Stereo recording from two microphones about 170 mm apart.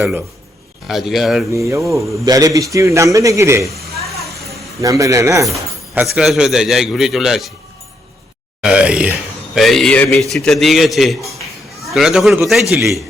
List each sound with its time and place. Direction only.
0.9 s a man's voice: centre (ahead or behind)
1.5 s a man's voice: 15° right (ahead or behind)
3.6 s a sound: centre (ahead or behind)
4.8 s a man's voice: 20° right (ahead or behind); by 7.5 s centre (ahead or behind)
8.6 s a man's voice: 5° right (ahead or behind)